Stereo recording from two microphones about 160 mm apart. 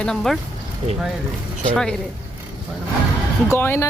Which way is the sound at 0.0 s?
5° left (ahead or behind).